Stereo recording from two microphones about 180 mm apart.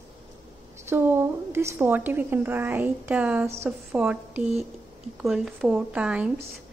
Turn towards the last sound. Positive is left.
turn(degrees=-5)  # may be behind; listen again after turning